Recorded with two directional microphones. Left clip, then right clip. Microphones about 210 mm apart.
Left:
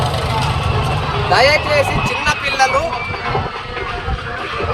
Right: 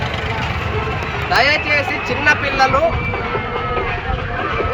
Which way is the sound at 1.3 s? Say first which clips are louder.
Left 2 dB; 15° left (ahead or behind).